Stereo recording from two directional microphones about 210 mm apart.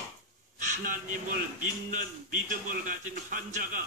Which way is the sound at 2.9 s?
40° right (ahead or behind).